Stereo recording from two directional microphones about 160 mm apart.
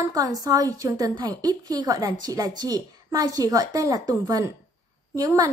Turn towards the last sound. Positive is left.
turn(degrees=-20)  # may be behind; listen again after turning